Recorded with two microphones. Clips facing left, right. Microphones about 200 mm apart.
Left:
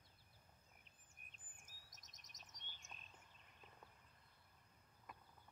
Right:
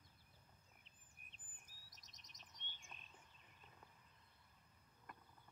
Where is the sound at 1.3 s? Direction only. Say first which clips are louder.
Left 2 dB; 45° left (ahead or behind).